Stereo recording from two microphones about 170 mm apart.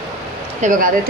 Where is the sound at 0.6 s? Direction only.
50° right (ahead or behind).